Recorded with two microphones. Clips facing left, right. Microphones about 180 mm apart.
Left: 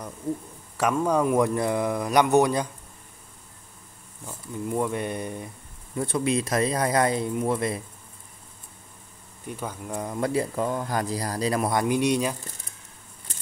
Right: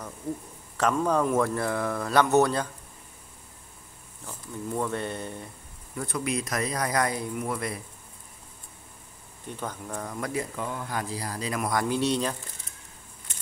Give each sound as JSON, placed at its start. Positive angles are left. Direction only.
{"t": 0.7, "sound": "speech", "side_deg": 10}
{"t": 4.3, "sound": "speech", "side_deg": 10}
{"t": 5.9, "sound": "speech", "side_deg": 25}
{"t": 9.5, "sound": "speech", "side_deg": 10}
{"t": 10.0, "sound": "speech", "side_deg": 25}
{"t": 11.8, "sound": "speech", "side_deg": 15}